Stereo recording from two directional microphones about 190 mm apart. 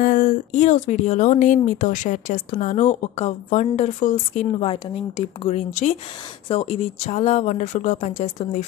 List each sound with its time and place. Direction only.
0.0 s speech: 45° left (ahead or behind)